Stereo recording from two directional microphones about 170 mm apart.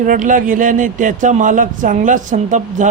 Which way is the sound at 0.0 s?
50° right (ahead or behind).